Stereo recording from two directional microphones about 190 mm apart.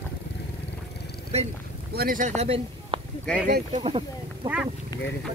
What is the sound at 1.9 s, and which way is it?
Speech, 50° right (ahead or behind).